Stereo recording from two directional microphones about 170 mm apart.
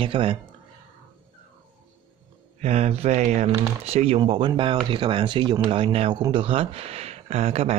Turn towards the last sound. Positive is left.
turn(degrees=-40)  # may be behind; listen again after turning